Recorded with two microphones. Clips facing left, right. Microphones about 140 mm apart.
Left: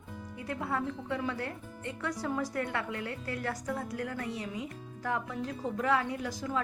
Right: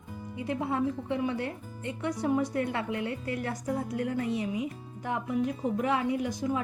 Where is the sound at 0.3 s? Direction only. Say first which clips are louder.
Right 5 dB; 20° right (ahead or behind).